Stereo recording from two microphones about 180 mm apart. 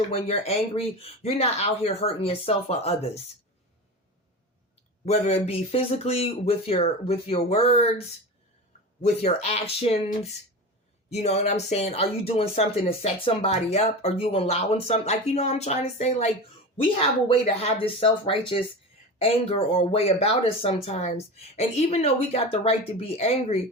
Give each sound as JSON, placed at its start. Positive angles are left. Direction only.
{"t": 0.1, "sound": "speech", "side_deg": 35}
{"t": 5.0, "sound": "speech", "side_deg": 35}